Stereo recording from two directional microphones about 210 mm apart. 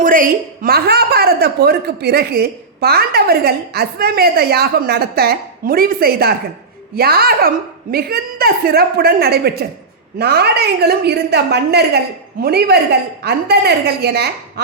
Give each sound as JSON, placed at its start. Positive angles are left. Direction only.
{"t": 0.0, "sound": "a woman's voice", "side_deg": -40}